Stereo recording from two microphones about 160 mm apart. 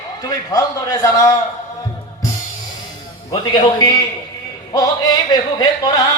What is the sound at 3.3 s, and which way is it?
A man's voice, 25° left (ahead or behind).